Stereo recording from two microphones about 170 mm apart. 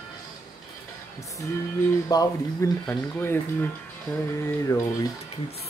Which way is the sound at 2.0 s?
20° left (ahead or behind).